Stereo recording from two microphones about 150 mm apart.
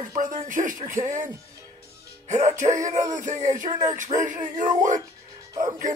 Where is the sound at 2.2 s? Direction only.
50° right (ahead or behind).